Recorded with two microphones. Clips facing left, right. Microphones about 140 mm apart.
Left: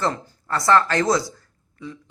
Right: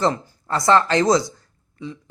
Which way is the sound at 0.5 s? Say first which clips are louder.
Right 2 dB; 20° right (ahead or behind).